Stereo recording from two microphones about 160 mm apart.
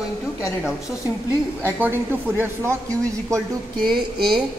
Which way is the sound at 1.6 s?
15° right (ahead or behind).